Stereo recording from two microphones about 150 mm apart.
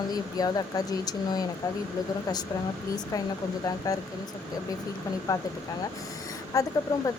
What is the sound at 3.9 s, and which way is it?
Speech, 25° left (ahead or behind).